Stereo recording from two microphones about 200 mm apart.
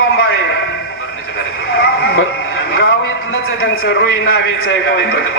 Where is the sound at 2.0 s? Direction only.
55° left (ahead or behind); by 4.5 s 70° left (ahead or behind).